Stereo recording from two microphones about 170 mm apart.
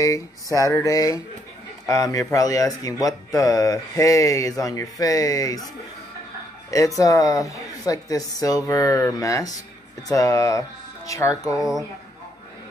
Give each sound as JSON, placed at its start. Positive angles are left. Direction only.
{"t": 0.6, "sound": "speech", "side_deg": 20}
{"t": 6.7, "sound": "speech", "side_deg": 20}